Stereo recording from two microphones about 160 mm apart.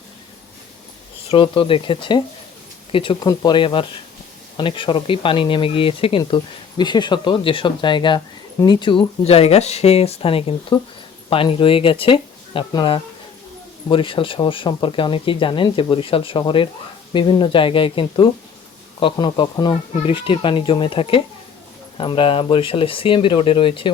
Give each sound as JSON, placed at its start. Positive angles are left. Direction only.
{"t": 1.3, "sound": "speech", "side_deg": 35}